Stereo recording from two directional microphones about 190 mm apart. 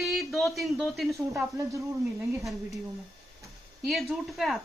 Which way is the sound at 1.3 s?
15° right (ahead or behind).